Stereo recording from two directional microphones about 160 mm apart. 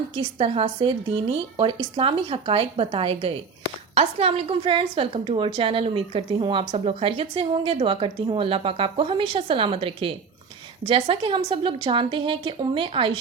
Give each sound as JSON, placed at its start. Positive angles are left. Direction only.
{"t": 0.2, "sound": "a woman's voice", "side_deg": -40}